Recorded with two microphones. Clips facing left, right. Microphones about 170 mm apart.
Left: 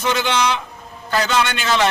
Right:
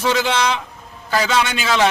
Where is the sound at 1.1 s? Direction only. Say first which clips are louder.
Right 1 dB; 5° right (ahead or behind).